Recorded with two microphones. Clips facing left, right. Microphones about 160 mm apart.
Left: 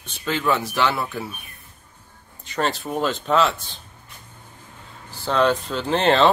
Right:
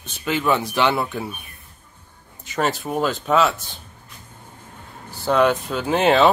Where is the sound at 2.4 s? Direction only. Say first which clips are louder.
Right 2 dB; 5° right (ahead or behind).